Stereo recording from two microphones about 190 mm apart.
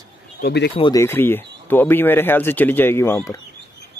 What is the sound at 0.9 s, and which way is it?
Speech, 10° left (ahead or behind).